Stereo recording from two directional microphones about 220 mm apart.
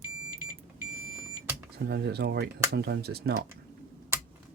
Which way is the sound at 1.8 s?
50° right (ahead or behind).